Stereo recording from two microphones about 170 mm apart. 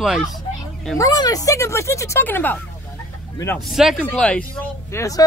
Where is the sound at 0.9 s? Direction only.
20° left (ahead or behind).